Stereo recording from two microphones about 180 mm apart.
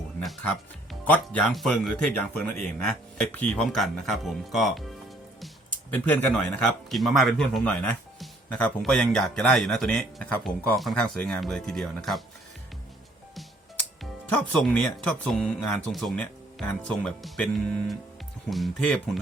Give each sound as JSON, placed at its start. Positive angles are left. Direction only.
{"t": 1.0, "sound": "a man's voice", "side_deg": 10}
{"t": 14.5, "sound": "a man's voice", "side_deg": 5}